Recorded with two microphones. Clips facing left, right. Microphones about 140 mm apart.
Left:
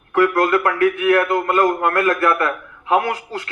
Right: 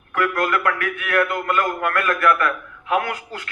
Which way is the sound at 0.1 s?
30° left (ahead or behind).